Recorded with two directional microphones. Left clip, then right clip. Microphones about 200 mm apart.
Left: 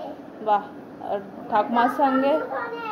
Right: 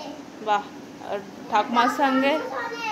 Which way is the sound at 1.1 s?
5° left (ahead or behind).